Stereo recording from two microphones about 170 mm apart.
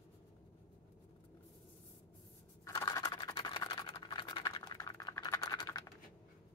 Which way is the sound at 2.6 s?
20° left (ahead or behind).